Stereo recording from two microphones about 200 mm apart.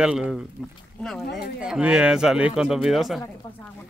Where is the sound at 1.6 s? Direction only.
5° right (ahead or behind).